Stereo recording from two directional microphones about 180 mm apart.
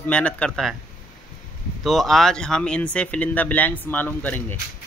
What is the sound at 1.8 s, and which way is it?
Speech, centre (ahead or behind).